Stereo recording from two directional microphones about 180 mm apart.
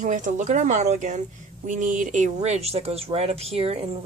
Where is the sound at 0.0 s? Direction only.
45° right (ahead or behind).